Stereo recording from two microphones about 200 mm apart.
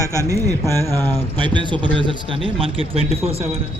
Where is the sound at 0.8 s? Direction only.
10° left (ahead or behind).